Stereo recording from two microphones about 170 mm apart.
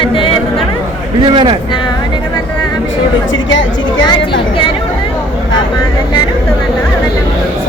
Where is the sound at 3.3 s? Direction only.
90° left.